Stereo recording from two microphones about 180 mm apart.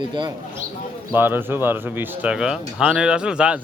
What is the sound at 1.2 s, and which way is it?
Speech, 10° right (ahead or behind).